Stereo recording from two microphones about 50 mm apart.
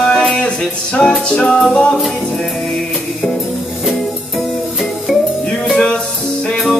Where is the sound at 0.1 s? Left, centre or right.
Centre.